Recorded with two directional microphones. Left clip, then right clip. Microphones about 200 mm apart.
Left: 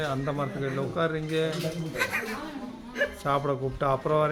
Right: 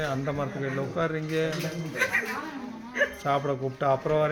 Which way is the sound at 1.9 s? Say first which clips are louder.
Right 3 dB; 40° left (ahead or behind).